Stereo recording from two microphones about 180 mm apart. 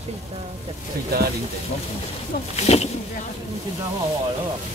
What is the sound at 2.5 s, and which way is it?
Speech, 35° left (ahead or behind).